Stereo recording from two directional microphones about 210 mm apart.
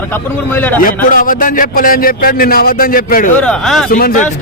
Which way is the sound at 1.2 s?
40° left (ahead or behind).